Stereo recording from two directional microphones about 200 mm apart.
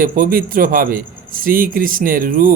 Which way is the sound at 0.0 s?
45° right (ahead or behind).